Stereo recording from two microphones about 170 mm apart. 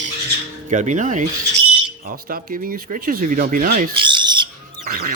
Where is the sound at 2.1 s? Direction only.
60° right (ahead or behind).